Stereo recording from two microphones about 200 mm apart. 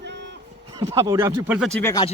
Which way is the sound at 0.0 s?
60° right (ahead or behind).